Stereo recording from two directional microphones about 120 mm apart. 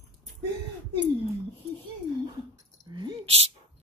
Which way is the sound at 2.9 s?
40° right (ahead or behind).